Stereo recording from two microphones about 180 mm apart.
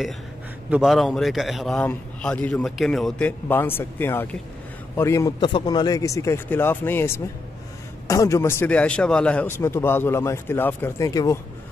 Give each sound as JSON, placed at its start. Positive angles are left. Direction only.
{"t": 0.7, "sound": "a man's voice", "side_deg": 0}